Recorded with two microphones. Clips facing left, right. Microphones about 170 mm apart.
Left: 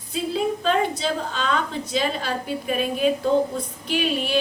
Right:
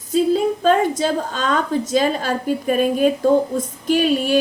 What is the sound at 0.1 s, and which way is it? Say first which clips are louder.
A woman's voice: right 7 dB; 40° right (ahead or behind).